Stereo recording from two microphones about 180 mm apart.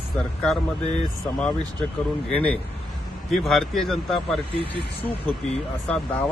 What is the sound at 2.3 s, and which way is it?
A man's voice, 5° left (ahead or behind).